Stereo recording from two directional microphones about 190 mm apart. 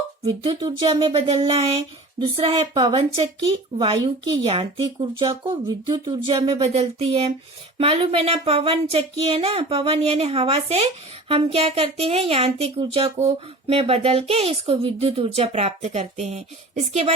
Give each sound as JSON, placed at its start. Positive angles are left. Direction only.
{"t": 0.3, "sound": "speech", "side_deg": -25}